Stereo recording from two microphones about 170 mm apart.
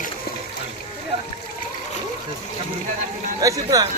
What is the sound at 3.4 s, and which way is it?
Speech, 20° right (ahead or behind).